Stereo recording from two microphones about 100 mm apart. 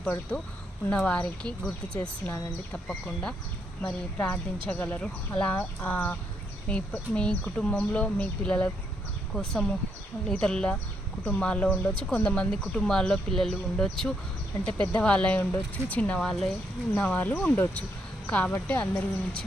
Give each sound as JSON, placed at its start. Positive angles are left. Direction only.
{"t": 0.3, "sound": "speech", "side_deg": 10}
{"t": 2.0, "sound": "speech", "side_deg": 25}
{"t": 2.7, "sound": "speech", "side_deg": 10}
{"t": 15.4, "sound": "speech", "side_deg": 25}
{"t": 16.0, "sound": "speech", "side_deg": 10}
{"t": 16.9, "sound": "speech", "side_deg": 20}